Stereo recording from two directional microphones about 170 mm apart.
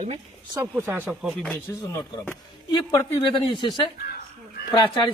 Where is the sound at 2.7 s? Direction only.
25° left (ahead or behind).